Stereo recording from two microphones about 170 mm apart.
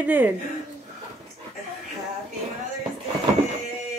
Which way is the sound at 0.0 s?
10° right (ahead or behind).